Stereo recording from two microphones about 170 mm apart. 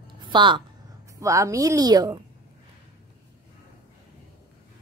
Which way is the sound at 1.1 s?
20° right (ahead or behind).